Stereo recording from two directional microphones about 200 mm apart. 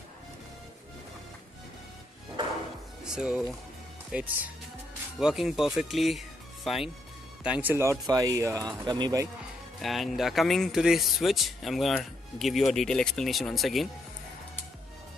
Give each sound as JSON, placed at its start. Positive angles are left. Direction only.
{"t": 3.0, "sound": "speech", "side_deg": -5}
{"t": 9.8, "sound": "speech", "side_deg": 0}